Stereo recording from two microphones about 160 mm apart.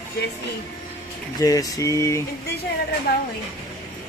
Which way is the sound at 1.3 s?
20° left (ahead or behind).